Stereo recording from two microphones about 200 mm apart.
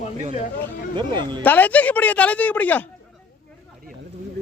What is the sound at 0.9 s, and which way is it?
Speech, 25° right (ahead or behind).